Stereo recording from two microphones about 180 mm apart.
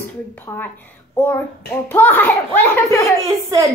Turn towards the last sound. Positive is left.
turn(degrees=-15)  # may be behind; listen again after turning